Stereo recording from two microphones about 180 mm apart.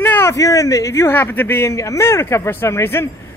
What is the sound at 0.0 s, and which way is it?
A man's voice, 15° left (ahead or behind).